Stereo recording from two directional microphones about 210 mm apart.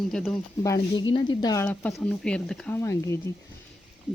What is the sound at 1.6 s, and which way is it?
Speech, 5° left (ahead or behind).